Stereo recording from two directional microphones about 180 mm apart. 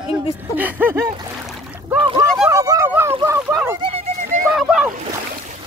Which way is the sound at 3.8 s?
35° right (ahead or behind).